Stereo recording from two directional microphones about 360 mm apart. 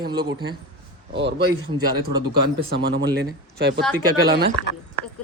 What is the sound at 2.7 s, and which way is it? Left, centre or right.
Speech, right.